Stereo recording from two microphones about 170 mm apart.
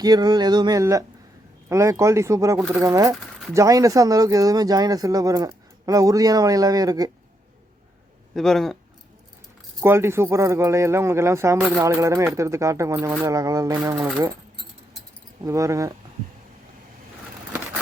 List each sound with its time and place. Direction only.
0.0 s speech: 25° right (ahead or behind)
8.4 s speech: centre (ahead or behind)
9.8 s speech: 15° right (ahead or behind)
15.4 s speech: 20° right (ahead or behind)